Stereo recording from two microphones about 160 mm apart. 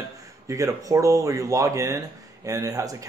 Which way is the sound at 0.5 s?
20° right (ahead or behind).